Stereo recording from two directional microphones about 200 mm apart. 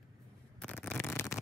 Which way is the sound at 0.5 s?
10° left (ahead or behind).